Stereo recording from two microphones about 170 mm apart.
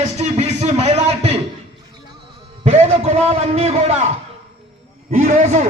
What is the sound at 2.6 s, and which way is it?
A man's voice, 40° right (ahead or behind).